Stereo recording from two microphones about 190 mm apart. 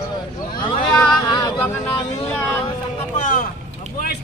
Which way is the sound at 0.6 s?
25° left (ahead or behind).